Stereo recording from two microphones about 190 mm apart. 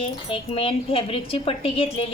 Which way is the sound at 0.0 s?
30° left (ahead or behind).